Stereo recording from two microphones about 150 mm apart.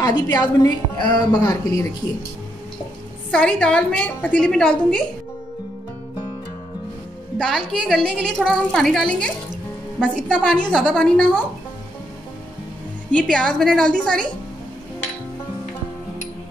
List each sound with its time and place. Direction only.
0.0 s a woman's voice: 25° left (ahead or behind)
3.3 s a woman's voice: 5° left (ahead or behind)
7.3 s a woman's voice: centre (ahead or behind)
13.1 s a woman's voice: 5° left (ahead or behind)